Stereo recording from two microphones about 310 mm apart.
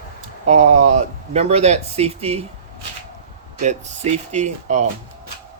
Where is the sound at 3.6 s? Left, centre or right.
Right.